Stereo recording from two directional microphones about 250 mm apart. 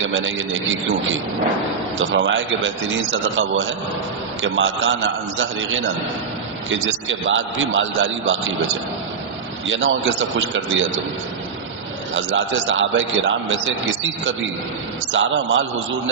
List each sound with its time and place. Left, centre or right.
0.2 s a man's voice: right
9.6 s a man's voice: right
12.1 s a man's voice: right
15.1 s a man's voice: right